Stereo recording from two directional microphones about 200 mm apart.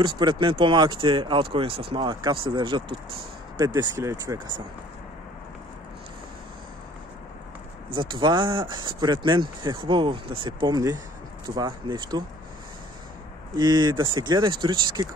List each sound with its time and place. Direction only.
0.0 s speech: 25° right (ahead or behind)
7.9 s speech: 25° right (ahead or behind)
13.6 s speech: 20° right (ahead or behind)